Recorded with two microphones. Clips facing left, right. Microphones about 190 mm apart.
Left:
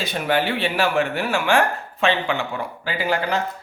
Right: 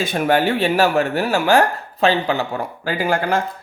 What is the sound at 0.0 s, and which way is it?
Speech, 50° right (ahead or behind).